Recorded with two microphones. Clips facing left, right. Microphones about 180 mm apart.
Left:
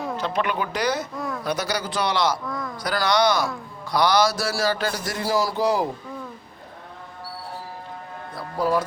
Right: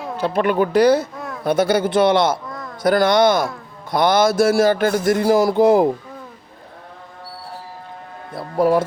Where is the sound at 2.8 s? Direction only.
50° right (ahead or behind).